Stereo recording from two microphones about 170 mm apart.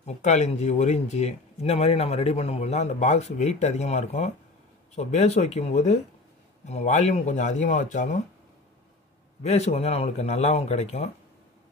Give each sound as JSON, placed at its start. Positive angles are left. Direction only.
{"t": 0.0, "sound": "speech", "side_deg": 40}
{"t": 9.4, "sound": "speech", "side_deg": 40}